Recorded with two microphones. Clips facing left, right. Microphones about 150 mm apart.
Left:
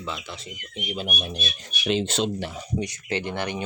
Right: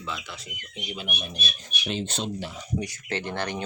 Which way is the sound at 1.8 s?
90° left.